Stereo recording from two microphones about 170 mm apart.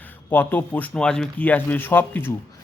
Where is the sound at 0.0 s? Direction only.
10° left (ahead or behind).